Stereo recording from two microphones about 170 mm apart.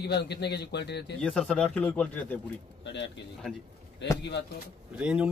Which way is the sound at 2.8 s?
90° left.